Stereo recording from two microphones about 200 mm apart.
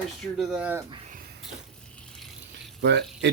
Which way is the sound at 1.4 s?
5° left (ahead or behind).